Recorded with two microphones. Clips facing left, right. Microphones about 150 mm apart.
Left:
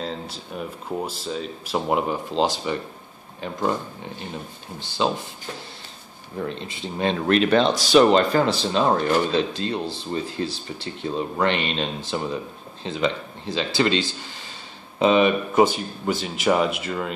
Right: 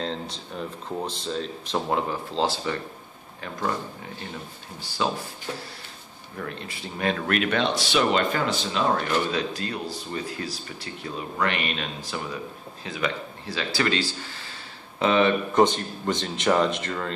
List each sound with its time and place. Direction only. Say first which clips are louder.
0.0 s speech: even; 5° left (ahead or behind)
4.7 s speech: left 3 dB; 20° left (ahead or behind)
6.3 s speech: left 5 dB; 20° left (ahead or behind)